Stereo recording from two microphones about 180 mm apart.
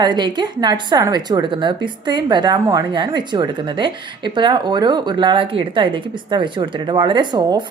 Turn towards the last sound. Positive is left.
turn(degrees=-25)  # may be behind; listen again after turning